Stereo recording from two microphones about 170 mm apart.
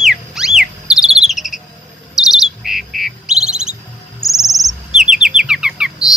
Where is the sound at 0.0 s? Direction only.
5° right (ahead or behind).